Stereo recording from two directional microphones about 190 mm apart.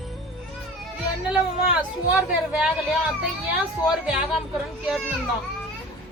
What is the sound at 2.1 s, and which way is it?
Speech, 5° right (ahead or behind).